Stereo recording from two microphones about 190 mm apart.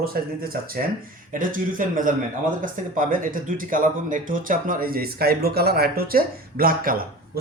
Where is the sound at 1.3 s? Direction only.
45° right (ahead or behind).